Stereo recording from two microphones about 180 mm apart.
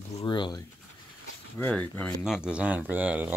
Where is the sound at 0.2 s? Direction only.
25° left (ahead or behind).